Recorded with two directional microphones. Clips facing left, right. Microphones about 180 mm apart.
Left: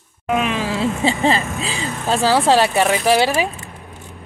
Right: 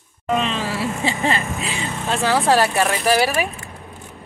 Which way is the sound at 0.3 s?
10° left (ahead or behind).